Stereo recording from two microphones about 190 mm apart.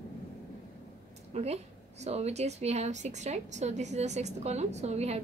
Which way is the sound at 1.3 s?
40° right (ahead or behind).